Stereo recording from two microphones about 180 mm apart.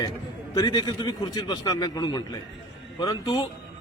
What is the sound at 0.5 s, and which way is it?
A man's voice, 20° left (ahead or behind).